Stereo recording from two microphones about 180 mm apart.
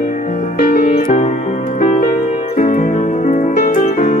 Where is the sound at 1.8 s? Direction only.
50° left (ahead or behind).